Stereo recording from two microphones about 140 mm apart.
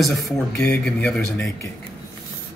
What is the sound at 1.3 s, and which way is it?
Speech, 20° left (ahead or behind).